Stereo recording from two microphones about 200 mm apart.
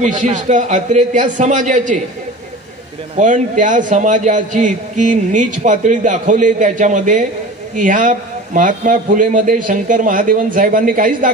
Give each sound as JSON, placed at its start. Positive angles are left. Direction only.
{"t": 0.0, "sound": "a man's voice", "side_deg": -35}
{"t": 3.2, "sound": "a man's voice", "side_deg": -40}